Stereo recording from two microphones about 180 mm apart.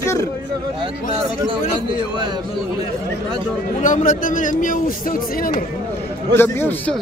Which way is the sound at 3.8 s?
45° left (ahead or behind).